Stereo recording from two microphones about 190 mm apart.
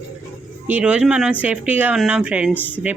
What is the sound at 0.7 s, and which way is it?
Speech, 5° right (ahead or behind).